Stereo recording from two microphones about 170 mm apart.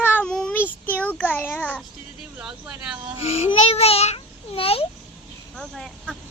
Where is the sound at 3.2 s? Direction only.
35° left (ahead or behind).